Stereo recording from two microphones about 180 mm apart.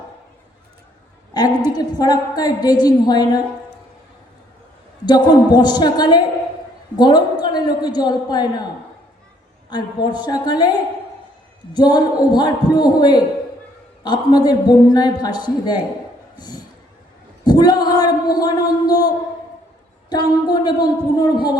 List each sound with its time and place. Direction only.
1.3 s a woman's voice: 20° left (ahead or behind)
5.0 s a woman's voice: 25° left (ahead or behind)
9.6 s a woman's voice: 25° left (ahead or behind)
11.7 s a woman's voice: 25° left (ahead or behind)
17.4 s a sound: 25° left (ahead or behind)
18.3 s a woman's voice: 20° left (ahead or behind)